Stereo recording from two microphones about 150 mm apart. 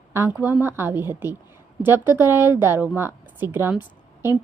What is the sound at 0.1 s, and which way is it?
A woman's voice, 15° right (ahead or behind).